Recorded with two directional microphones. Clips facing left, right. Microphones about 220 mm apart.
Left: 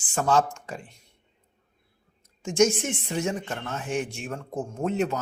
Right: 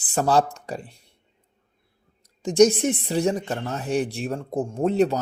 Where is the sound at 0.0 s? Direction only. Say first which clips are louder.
Right 3 dB; 35° right (ahead or behind).